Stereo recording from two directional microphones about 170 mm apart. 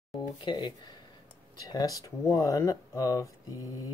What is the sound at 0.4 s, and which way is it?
Speech, 25° left (ahead or behind).